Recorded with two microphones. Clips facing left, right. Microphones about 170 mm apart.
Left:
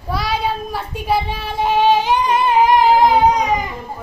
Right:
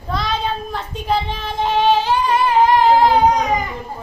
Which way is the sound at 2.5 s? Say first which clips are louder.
Even; 10° left (ahead or behind).